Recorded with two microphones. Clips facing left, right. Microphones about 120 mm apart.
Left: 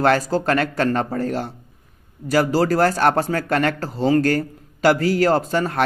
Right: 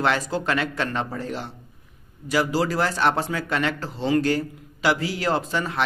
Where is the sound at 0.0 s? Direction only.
45° left (ahead or behind).